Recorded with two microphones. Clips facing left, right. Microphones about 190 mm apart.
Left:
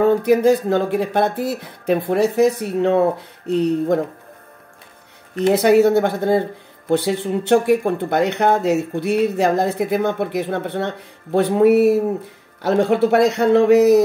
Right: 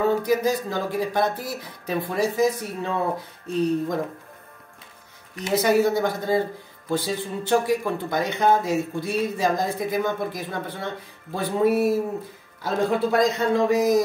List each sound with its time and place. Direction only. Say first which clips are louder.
0.0 s speech: left 7 dB; 60° left (ahead or behind)
5.3 s speech: left 7 dB; 60° left (ahead or behind)